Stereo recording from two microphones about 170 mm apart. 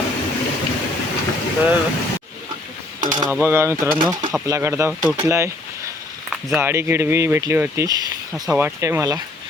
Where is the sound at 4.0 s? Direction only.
25° right (ahead or behind).